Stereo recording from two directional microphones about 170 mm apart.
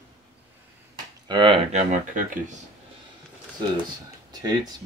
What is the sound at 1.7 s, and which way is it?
Speech, 50° right (ahead or behind).